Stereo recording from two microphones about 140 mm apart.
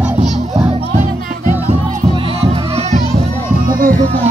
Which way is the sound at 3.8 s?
75° right (ahead or behind).